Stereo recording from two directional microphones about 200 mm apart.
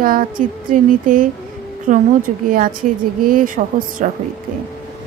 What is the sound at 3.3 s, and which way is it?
Speech, 45° right (ahead or behind).